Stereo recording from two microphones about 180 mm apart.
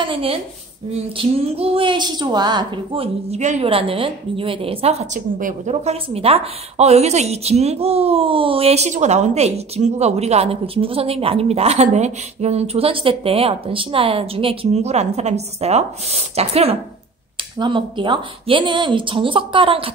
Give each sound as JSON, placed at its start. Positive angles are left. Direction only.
{"t": 0.0, "sound": "a woman's voice", "side_deg": -30}